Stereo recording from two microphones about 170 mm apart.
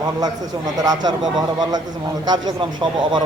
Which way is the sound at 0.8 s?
20° right (ahead or behind).